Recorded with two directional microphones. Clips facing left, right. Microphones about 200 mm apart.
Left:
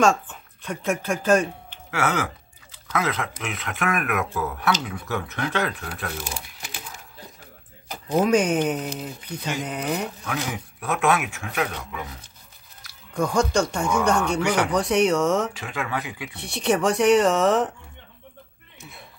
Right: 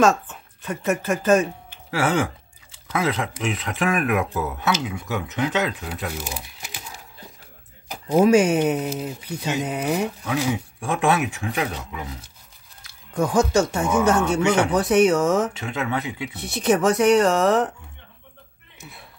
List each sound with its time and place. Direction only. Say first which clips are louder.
0.0 s speech: right 2 dB; centre (ahead or behind)
1.9 s speech: right 3 dB; 30° right (ahead or behind)
7.9 s speech: right 4 dB; 5° right (ahead or behind)
10.5 s speech: right 3 dB; 30° right (ahead or behind)
13.4 s speech: right 3 dB; 5° right (ahead or behind)
14.4 s speech: right 3 dB; 25° right (ahead or behind)
14.7 s speech: right 3 dB; 5° right (ahead or behind)
15.5 s speech: right 3 dB; 20° right (ahead or behind)
16.3 s speech: right 2 dB; 5° right (ahead or behind)